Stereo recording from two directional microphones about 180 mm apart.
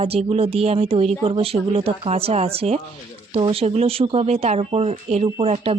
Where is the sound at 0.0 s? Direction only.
35° right (ahead or behind).